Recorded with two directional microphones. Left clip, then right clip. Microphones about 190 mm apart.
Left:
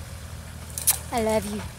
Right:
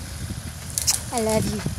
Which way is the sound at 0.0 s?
15° left (ahead or behind).